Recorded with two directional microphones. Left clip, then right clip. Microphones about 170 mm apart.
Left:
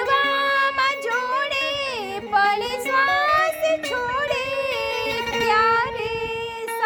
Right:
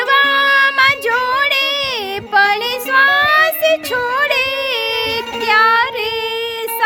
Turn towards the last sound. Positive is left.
turn(degrees=-20)  # may be behind; listen again after turning